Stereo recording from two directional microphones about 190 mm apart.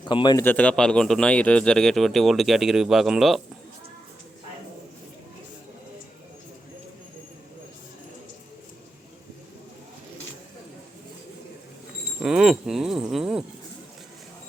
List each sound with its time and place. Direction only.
0.0 s a man's voice: 25° left (ahead or behind)
0.4 s speech: 5° left (ahead or behind)
12.2 s speech: 5° right (ahead or behind)